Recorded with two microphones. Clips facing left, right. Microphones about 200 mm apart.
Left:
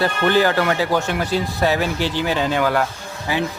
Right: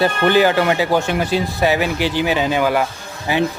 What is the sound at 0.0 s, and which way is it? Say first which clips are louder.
Speech: right 3 dB; 15° right (ahead or behind).